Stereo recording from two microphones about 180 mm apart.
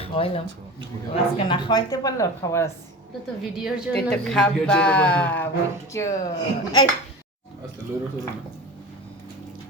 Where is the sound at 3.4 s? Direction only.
Centre (ahead or behind).